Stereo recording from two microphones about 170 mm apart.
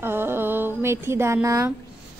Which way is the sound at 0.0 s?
15° right (ahead or behind).